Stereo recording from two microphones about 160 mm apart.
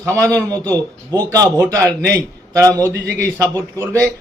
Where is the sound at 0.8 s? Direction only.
20° right (ahead or behind).